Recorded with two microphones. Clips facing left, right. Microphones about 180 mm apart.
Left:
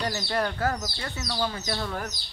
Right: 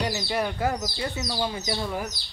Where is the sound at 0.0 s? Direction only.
10° right (ahead or behind).